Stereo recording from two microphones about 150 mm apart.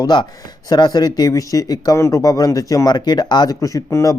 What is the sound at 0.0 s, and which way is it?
Speech, 30° left (ahead or behind).